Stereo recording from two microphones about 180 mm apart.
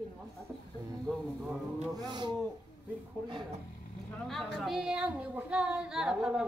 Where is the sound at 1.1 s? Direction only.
5° left (ahead or behind).